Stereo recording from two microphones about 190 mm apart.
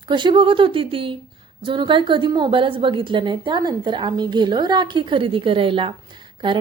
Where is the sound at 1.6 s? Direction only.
25° right (ahead or behind).